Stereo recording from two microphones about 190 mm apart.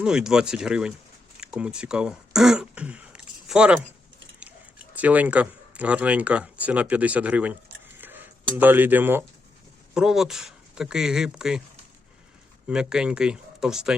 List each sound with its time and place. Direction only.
0.0 s speech: 5° right (ahead or behind)
1.4 s throat clearing: 5° right (ahead or behind)
4.9 s speech: 10° right (ahead or behind)
12.6 s speech: 5° right (ahead or behind)